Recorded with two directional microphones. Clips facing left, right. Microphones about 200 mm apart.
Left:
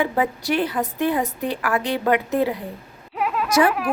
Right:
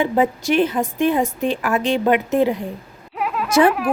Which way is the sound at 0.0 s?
20° right (ahead or behind).